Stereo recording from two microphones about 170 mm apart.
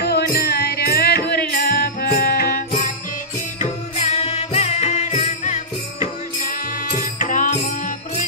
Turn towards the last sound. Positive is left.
turn(degrees=45)  # may be behind; listen again after turning